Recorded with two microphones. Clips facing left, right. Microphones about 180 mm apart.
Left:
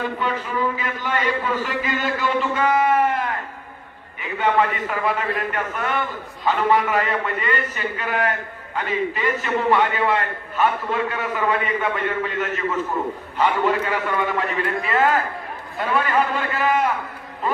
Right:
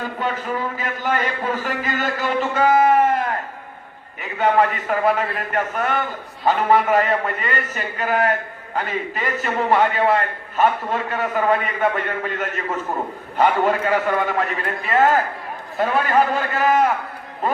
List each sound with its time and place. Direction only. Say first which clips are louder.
0.2 s a man's voice: even; 45° right (ahead or behind)